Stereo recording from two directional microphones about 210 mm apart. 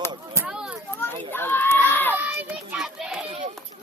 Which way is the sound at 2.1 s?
10° right (ahead or behind).